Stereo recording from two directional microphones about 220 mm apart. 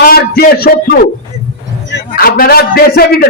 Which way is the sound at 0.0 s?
45° left (ahead or behind).